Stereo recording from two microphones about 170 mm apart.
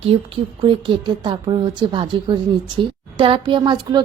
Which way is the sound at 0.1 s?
30° right (ahead or behind).